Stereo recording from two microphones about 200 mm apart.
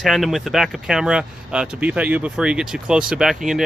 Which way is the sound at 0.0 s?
Centre (ahead or behind).